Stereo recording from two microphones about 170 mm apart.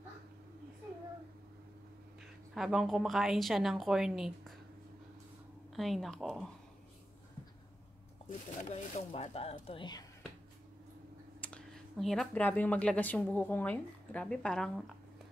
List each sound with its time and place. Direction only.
2.5 s a woman's voice: centre (ahead or behind)
5.8 s a woman's voice: centre (ahead or behind)
8.6 s speech: 40° left (ahead or behind)
11.4 s speech: 5° left (ahead or behind)